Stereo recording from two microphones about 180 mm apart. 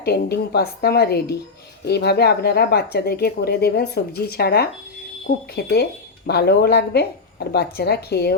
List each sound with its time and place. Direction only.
0.0 s speech: 65° left (ahead or behind)